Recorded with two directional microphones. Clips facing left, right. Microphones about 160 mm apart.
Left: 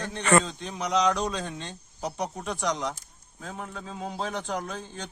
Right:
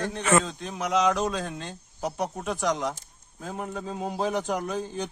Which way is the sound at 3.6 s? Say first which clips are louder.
Right 5 dB; 45° right (ahead or behind).